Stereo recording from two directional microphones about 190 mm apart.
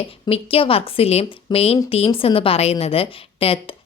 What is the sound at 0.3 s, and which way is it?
A woman's voice, 30° left (ahead or behind).